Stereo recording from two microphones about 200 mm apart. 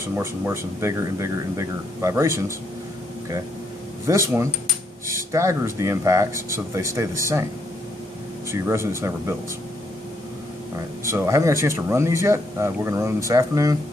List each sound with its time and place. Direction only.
0.0 s speech: 10° right (ahead or behind)
4.1 s speech: 15° right (ahead or behind)
5.3 s speech: 15° right (ahead or behind)
8.5 s speech: 15° right (ahead or behind)
11.1 s speech: 15° right (ahead or behind)